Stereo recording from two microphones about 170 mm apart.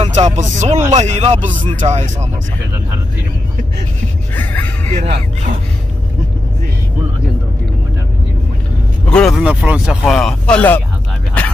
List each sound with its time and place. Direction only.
0.0 s speech: 40° right (ahead or behind)
4.4 s speech: 10° left (ahead or behind)
5.0 s speech: 45° right (ahead or behind)
9.1 s speech: centre (ahead or behind)